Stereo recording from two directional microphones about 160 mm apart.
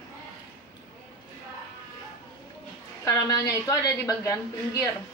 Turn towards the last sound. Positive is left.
turn(degrees=20)  # may be behind; listen again after turning